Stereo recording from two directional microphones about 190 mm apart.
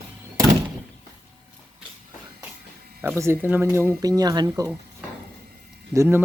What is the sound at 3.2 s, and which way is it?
Speech, 10° right (ahead or behind).